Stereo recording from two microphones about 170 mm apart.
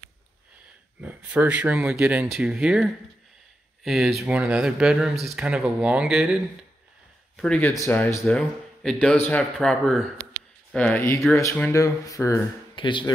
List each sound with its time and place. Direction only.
1.0 s speech: 10° right (ahead or behind); by 13.1 s 30° left (ahead or behind)